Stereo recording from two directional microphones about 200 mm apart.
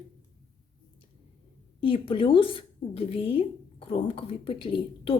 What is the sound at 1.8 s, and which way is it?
Speech, 25° left (ahead or behind).